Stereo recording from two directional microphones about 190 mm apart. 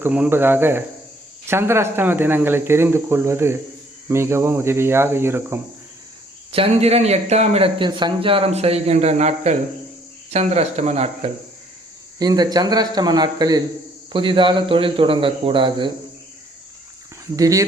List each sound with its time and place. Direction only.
0.0 s speech: 10° right (ahead or behind)
6.5 s a man's voice: 30° right (ahead or behind)
12.2 s speech: 20° right (ahead or behind)
17.3 s speech: 15° right (ahead or behind)